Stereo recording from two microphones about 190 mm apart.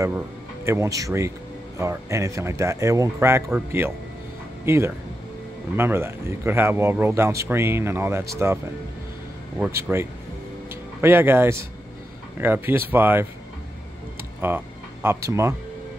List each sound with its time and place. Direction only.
0.7 s speech: 15° right (ahead or behind)
9.6 s speech: 15° right (ahead or behind)
14.4 s speech: 10° right (ahead or behind)